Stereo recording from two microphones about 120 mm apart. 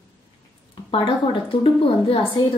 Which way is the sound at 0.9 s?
45° left (ahead or behind).